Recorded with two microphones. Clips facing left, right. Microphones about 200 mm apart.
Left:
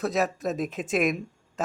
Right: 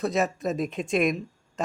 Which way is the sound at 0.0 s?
Centre (ahead or behind).